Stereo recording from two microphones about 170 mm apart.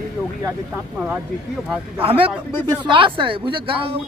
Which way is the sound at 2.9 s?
30° right (ahead or behind).